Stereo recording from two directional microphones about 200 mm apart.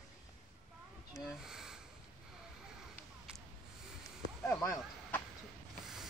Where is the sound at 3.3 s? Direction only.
5° right (ahead or behind).